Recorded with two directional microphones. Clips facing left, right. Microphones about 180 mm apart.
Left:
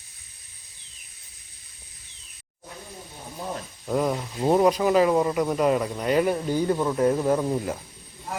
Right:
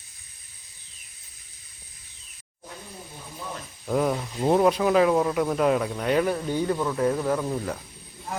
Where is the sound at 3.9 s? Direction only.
Centre (ahead or behind).